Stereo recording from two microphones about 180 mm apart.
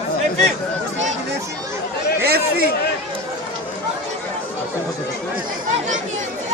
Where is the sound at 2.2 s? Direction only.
60° right (ahead or behind).